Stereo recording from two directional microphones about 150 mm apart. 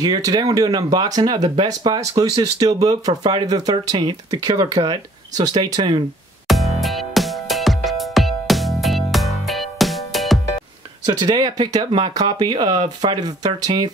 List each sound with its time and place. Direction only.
0.0 s speech: 25° right (ahead or behind)
6.4 s music: centre (ahead or behind)
11.1 s speech: 30° right (ahead or behind)